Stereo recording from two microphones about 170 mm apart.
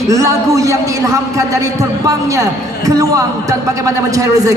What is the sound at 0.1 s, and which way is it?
A man's voice, 20° right (ahead or behind).